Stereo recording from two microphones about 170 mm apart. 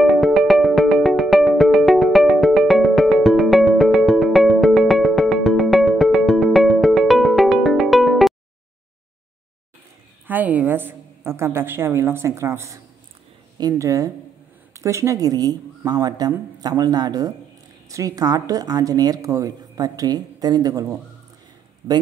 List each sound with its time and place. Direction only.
0.0 s music: centre (ahead or behind)
10.2 s a woman's voice: 10° right (ahead or behind)